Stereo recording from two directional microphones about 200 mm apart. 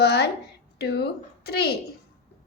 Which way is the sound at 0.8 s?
55° left (ahead or behind).